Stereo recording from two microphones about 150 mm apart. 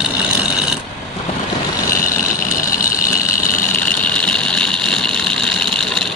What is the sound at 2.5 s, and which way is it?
Vehicle, 65° left (ahead or behind).